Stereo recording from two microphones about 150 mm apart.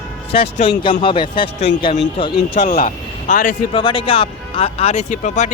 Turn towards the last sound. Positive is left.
turn(degrees=50)  # may be behind; listen again after turning